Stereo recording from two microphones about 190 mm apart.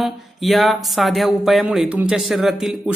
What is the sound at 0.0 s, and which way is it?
Speech, centre (ahead or behind).